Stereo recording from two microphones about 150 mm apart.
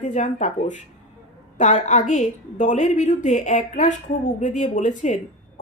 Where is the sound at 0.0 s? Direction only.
55° left (ahead or behind).